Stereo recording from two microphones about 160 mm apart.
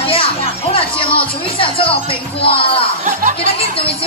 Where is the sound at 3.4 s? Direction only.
35° left (ahead or behind).